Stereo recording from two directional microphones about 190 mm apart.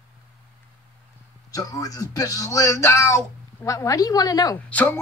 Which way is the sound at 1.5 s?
20° left (ahead or behind).